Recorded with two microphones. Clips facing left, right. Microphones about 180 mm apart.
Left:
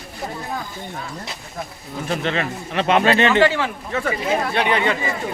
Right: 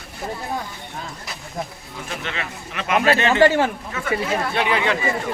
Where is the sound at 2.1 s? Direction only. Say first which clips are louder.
Left 8 dB; 40° left (ahead or behind).